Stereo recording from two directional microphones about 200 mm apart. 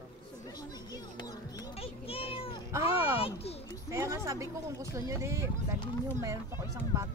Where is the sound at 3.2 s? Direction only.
30° left (ahead or behind).